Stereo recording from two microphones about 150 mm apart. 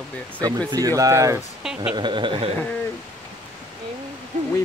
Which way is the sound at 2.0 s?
30° right (ahead or behind).